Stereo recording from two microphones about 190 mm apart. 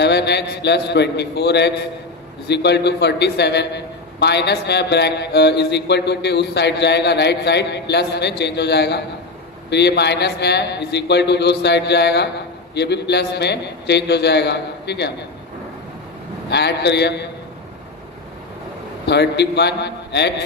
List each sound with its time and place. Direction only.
0.0 s a man's voice: 60° left (ahead or behind)
16.4 s a man's voice: 60° left (ahead or behind)
19.0 s a man's voice: 60° left (ahead or behind)